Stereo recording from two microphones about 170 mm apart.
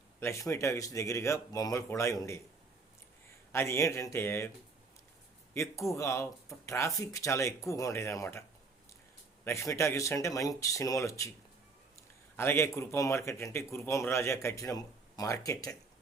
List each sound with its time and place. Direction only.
0.2 s speech: 15° left (ahead or behind)
3.5 s speech: 15° left (ahead or behind)
5.9 s speech: 20° left (ahead or behind)
12.4 s speech: 15° left (ahead or behind)